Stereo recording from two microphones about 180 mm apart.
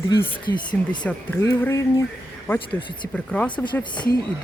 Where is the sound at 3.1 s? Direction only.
5° left (ahead or behind).